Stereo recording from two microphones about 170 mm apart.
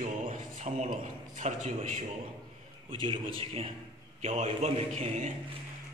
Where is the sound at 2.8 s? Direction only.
30° right (ahead or behind).